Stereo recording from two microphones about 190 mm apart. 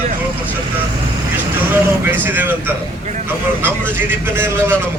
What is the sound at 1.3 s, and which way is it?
Speech, 10° right (ahead or behind).